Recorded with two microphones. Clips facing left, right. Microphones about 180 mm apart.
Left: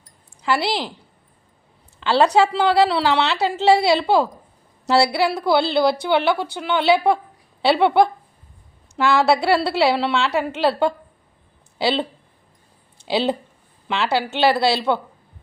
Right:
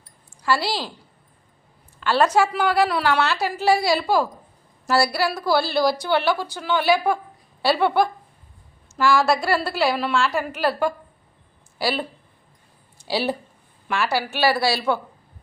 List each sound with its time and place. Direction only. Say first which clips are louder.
0.4 s a woman's voice: left 2 dB; 20° left (ahead or behind)
2.0 s a woman's voice: left 3 dB; 25° left (ahead or behind)
9.2 s a woman's voice: left 4 dB; 70° left (ahead or behind)
10.0 s a woman's voice: left 1 dB; 20° left (ahead or behind)
11.8 s a woman's voice: left 4 dB; 25° left (ahead or behind)
13.1 s a woman's voice: left 3 dB; 20° left (ahead or behind)